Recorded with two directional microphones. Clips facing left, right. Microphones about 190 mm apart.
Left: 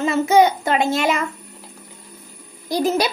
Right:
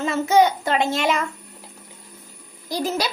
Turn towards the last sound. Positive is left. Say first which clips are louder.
# left 5 dB
turn(degrees=20)  # may be behind; listen again after turning